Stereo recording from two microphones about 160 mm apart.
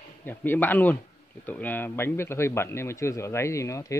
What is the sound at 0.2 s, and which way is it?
A man's voice, 10° left (ahead or behind).